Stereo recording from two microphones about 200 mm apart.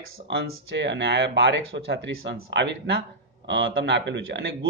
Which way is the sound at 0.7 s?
60° right (ahead or behind).